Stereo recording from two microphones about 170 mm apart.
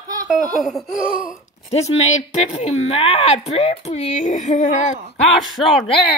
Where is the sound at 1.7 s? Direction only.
40° left (ahead or behind).